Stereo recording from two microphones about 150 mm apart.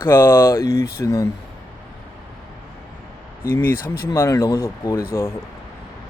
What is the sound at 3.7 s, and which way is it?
Speech, 75° left (ahead or behind).